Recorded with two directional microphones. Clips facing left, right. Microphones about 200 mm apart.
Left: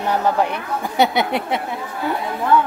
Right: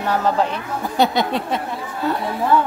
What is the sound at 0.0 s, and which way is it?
Speech, 15° left (ahead or behind).